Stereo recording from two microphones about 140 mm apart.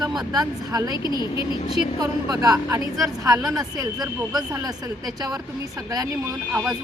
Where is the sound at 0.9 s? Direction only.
30° left (ahead or behind).